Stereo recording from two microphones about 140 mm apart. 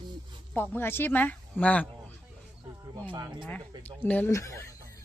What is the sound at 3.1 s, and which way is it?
Speech, 35° right (ahead or behind).